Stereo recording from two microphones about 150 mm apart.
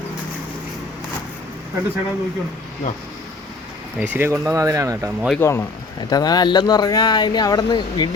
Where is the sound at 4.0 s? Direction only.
15° right (ahead or behind).